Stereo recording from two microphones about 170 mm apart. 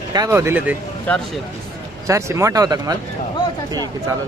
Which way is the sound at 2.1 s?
15° right (ahead or behind).